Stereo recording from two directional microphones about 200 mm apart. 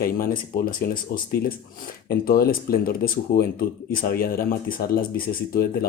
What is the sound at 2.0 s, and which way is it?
Speech, 50° left (ahead or behind).